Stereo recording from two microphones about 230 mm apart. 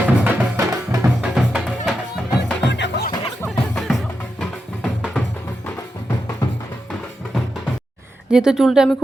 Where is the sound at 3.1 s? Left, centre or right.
Centre.